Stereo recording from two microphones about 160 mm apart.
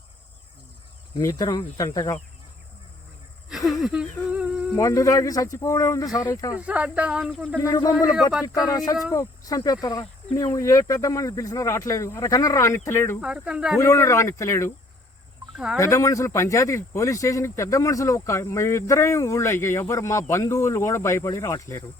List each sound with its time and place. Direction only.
1.2 s speech: 25° left (ahead or behind)
3.5 s a sound: centre (ahead or behind)
4.8 s speech: 20° left (ahead or behind)
6.6 s speech: 10° right (ahead or behind)
7.6 s speech: 25° left (ahead or behind)
8.3 s speech: 5° right (ahead or behind)
8.7 s speech: 20° left (ahead or behind)
13.2 s speech: 5° right (ahead or behind)
13.7 s speech: 20° left (ahead or behind)
15.5 s cricket: centre (ahead or behind)
15.8 s speech: 20° left (ahead or behind)